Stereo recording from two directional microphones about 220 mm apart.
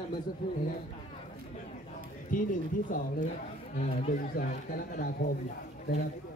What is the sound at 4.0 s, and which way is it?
Speech, 40° left (ahead or behind).